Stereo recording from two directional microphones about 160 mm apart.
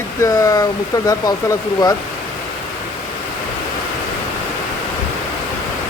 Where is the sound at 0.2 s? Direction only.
20° left (ahead or behind).